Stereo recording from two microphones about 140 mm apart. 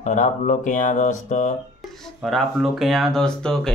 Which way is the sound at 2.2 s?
Centre (ahead or behind).